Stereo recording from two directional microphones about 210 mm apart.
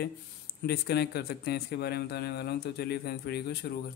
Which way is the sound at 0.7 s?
50° left (ahead or behind).